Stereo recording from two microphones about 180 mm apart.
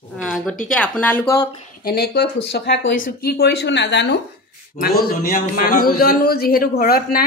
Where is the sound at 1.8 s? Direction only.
60° left (ahead or behind); by 3.1 s 80° left.